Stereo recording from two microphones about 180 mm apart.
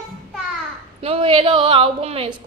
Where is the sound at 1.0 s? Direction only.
30° right (ahead or behind).